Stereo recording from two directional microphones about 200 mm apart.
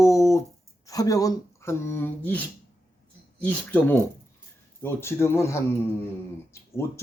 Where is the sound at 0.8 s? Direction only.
15° left (ahead or behind).